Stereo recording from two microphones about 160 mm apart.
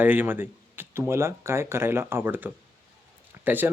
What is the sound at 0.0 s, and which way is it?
Speech, 10° right (ahead or behind).